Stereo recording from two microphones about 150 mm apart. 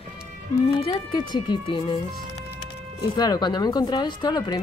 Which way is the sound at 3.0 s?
25° left (ahead or behind).